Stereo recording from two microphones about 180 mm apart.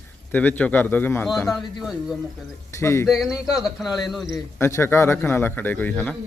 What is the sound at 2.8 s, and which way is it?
Speech, 15° left (ahead or behind).